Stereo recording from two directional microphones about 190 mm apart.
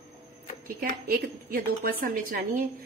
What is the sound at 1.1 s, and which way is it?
A woman's voice, 50° right (ahead or behind).